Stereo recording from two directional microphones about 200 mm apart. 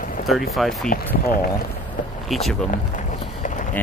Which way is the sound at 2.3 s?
Centre (ahead or behind).